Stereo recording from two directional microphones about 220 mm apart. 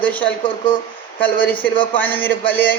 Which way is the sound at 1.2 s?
10° left (ahead or behind).